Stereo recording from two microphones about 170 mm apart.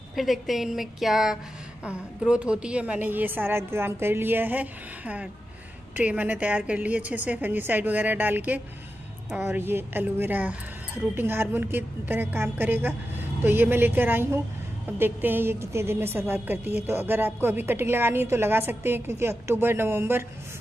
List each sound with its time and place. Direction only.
0.1 s a woman's voice: centre (ahead or behind)